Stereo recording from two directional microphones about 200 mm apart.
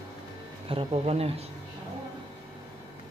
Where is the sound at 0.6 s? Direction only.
30° right (ahead or behind).